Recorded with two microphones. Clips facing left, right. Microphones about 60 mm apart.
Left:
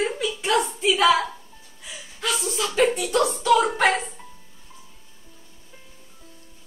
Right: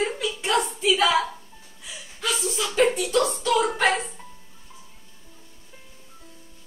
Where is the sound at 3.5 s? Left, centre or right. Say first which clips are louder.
Left 4 dB; centre.